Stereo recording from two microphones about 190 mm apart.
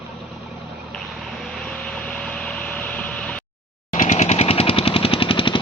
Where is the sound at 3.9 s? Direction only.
45° left (ahead or behind); by 5.6 s 25° left (ahead or behind).